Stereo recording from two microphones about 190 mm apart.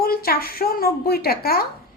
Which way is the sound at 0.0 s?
50° left (ahead or behind).